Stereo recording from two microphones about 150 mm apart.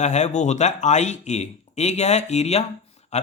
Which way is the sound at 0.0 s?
50° left (ahead or behind).